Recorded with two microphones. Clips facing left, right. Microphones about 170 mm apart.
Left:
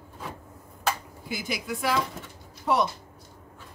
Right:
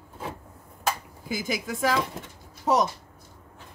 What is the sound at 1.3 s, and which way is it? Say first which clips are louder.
A woman's voice: right 2 dB; 45° right (ahead or behind).